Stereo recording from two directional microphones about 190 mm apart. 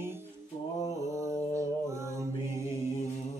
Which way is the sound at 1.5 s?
15° right (ahead or behind).